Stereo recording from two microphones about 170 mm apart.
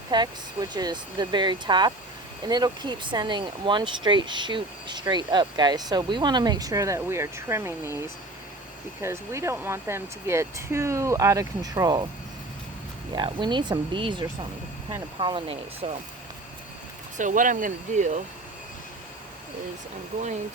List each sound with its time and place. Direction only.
0.1 s speech: 25° right (ahead or behind)
13.1 s speech: 25° right (ahead or behind)
17.2 s speech: 50° right (ahead or behind)